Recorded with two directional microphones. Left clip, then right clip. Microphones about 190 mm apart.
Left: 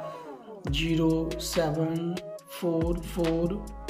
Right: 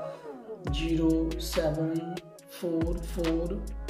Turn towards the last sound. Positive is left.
turn(degrees=0)  # may be behind; listen again after turning